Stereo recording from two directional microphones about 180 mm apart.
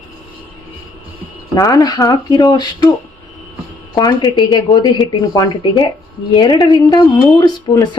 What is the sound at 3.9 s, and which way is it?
Speech, 20° left (ahead or behind).